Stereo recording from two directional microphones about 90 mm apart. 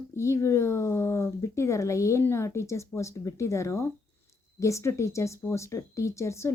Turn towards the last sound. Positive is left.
turn(degrees=30)  # may be behind; listen again after turning